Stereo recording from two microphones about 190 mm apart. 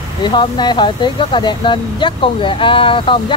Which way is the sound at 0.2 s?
25° left (ahead or behind).